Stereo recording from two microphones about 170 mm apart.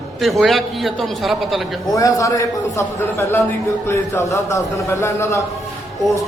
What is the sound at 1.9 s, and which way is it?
A man's voice, 20° left (ahead or behind).